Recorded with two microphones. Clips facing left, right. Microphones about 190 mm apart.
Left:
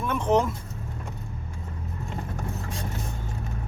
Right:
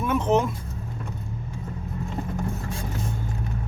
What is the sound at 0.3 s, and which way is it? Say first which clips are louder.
Speech: left 1 dB; 20° right (ahead or behind).